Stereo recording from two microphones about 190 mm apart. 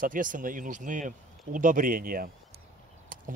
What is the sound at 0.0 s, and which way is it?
Speech, 45° right (ahead or behind).